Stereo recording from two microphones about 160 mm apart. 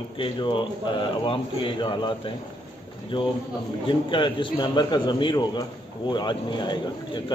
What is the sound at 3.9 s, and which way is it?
A man's voice, 30° left (ahead or behind).